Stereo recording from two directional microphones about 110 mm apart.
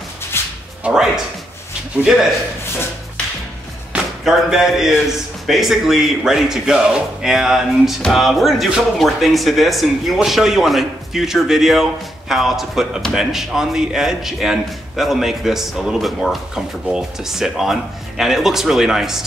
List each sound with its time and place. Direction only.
0.3 s music: 20° left (ahead or behind)
0.8 s music: 5° right (ahead or behind)
3.9 s speech: 5° right (ahead or behind)